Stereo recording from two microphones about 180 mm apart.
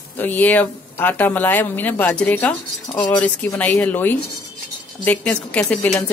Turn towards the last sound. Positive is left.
turn(degrees=5)  # may be behind; listen again after turning